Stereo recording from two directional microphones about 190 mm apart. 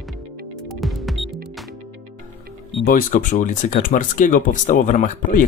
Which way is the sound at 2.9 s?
45° left (ahead or behind).